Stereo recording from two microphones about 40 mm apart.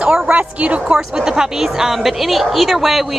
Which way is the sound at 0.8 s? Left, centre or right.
Centre.